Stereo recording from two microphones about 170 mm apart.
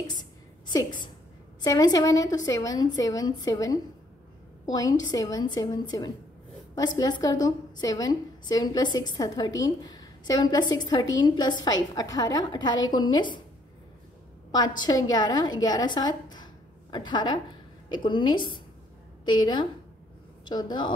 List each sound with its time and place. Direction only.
0.0 s a sound: 25° left (ahead or behind)
1.6 s a woman's voice: 25° left (ahead or behind)
14.8 s a woman's voice: 20° left (ahead or behind)